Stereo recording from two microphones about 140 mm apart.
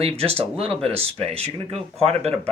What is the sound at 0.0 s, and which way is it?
Speech, 45° right (ahead or behind).